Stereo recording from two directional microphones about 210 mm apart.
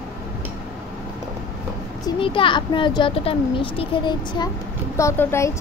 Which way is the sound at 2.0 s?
25° left (ahead or behind).